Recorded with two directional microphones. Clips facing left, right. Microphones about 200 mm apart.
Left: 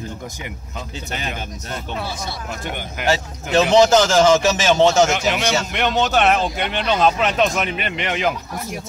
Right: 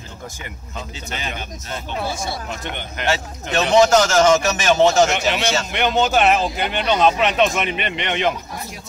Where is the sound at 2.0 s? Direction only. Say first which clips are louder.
Right 3 dB; 50° right (ahead or behind).